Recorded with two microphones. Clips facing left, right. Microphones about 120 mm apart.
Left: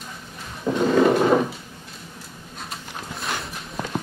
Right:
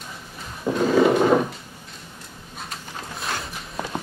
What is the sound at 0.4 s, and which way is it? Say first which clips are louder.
Drawer open or close: even; centre (ahead or behind).